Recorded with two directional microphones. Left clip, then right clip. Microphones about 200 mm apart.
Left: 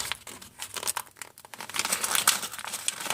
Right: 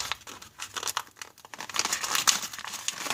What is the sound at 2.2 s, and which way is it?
Crumpling, 5° left (ahead or behind).